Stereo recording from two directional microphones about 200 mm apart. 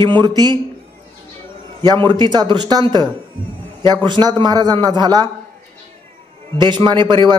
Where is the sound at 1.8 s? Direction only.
20° right (ahead or behind).